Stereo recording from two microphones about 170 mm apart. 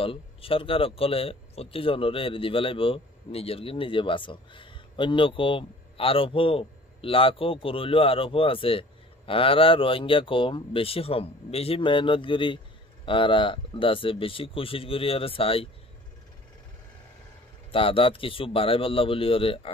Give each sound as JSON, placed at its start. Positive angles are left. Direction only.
{"t": 0.0, "sound": "speech", "side_deg": 35}
{"t": 17.6, "sound": "speech", "side_deg": 30}